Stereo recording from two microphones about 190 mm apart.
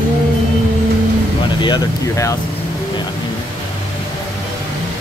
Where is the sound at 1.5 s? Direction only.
25° left (ahead or behind).